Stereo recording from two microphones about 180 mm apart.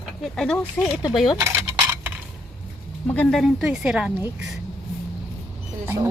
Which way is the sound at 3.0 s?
10° left (ahead or behind).